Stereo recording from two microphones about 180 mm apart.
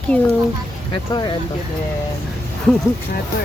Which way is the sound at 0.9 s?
25° left (ahead or behind).